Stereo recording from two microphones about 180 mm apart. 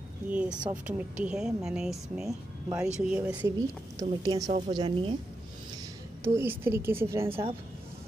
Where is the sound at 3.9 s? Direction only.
20° right (ahead or behind).